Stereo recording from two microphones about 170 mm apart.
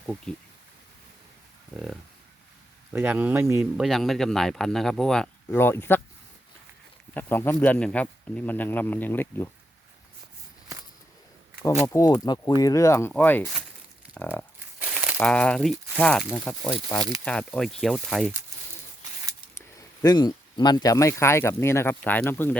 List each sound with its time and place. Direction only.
1.7 s speech: 5° left (ahead or behind)
2.9 s speech: 10° right (ahead or behind)
3.8 s speech: centre (ahead or behind)
7.1 s speech: 10° left (ahead or behind)
11.9 s speech: 20° left (ahead or behind)
14.8 s crumpling: 10° right (ahead or behind)
15.2 s speech: 5° left (ahead or behind)
20.0 s speech: 25° left (ahead or behind)